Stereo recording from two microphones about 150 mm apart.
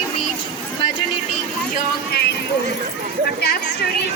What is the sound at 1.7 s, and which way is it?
Speech, 90° left.